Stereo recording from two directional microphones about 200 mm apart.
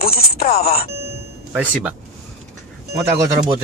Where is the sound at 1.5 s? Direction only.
5° right (ahead or behind).